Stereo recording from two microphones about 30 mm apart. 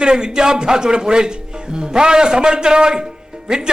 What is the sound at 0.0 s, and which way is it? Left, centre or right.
A man's voice, right.